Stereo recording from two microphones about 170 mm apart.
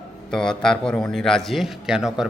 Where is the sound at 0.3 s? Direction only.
5° left (ahead or behind).